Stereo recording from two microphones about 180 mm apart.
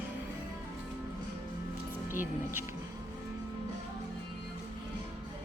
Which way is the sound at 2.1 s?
10° right (ahead or behind).